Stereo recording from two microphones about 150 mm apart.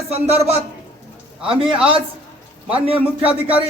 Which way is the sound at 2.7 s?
40° right (ahead or behind).